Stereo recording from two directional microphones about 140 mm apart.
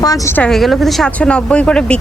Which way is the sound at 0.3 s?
5° left (ahead or behind).